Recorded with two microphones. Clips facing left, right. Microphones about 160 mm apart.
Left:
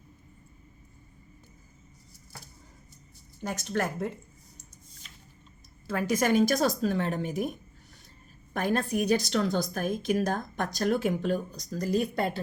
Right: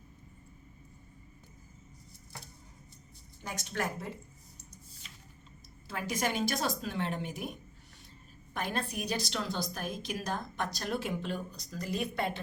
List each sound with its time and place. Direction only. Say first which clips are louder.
3.4 s a woman's voice: left 6 dB; 45° left (ahead or behind)
5.9 s a woman's voice: left 8 dB; 50° left (ahead or behind)
8.5 s a woman's voice: left 8 dB; 50° left (ahead or behind)